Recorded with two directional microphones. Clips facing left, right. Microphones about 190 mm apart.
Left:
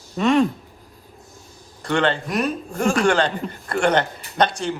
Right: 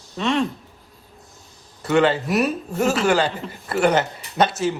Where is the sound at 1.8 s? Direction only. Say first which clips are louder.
Right 3 dB; 5° right (ahead or behind).